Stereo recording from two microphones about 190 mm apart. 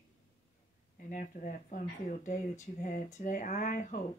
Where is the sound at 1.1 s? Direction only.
40° left (ahead or behind).